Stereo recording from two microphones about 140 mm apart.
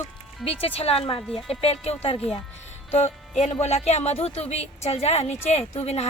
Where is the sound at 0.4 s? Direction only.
45° left (ahead or behind).